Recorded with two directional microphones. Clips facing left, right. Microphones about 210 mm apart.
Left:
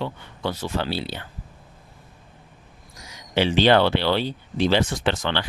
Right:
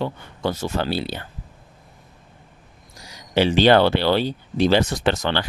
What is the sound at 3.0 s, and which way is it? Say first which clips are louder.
Speech: right 3 dB; 35° right (ahead or behind).